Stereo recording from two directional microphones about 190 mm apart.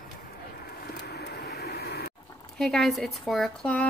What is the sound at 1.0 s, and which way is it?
Vehicle, 60° left (ahead or behind).